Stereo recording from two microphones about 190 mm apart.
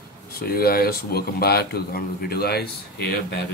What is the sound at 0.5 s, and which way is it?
Speech, 55° left (ahead or behind).